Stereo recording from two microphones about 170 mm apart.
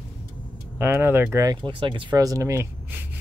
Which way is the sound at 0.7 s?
15° right (ahead or behind).